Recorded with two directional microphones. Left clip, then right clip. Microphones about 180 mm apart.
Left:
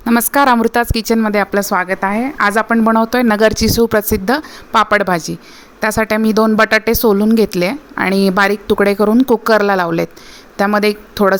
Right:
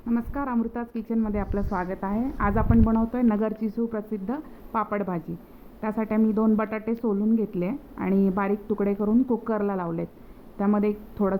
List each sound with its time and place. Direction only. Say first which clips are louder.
0.0 s a woman's voice: left 18 dB; 90° left; by 0.9 s 70° left (ahead or behind)
1.0 s a woman's voice: left 15 dB; 50° left (ahead or behind)
3.8 s a woman's voice: left 17 dB; 70° left (ahead or behind); by 6.9 s 50° left (ahead or behind)
7.0 s a woman's voice: left 15 dB; 90° left
7.3 s a woman's voice: left 14 dB; 50° left (ahead or behind)
9.0 s a woman's voice: left 13 dB; 80° left
9.5 s a woman's voice: left 16 dB; 50° left (ahead or behind)